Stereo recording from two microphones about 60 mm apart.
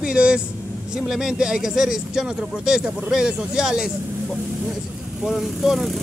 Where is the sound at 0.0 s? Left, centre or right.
Centre.